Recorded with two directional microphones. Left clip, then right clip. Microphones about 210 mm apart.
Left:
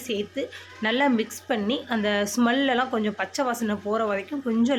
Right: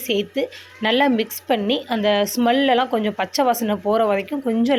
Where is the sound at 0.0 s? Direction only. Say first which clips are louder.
Right 7 dB; 25° right (ahead or behind).